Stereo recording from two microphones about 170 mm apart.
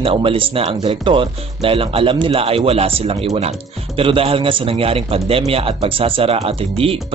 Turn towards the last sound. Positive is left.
turn(degrees=-35)  # may be behind; listen again after turning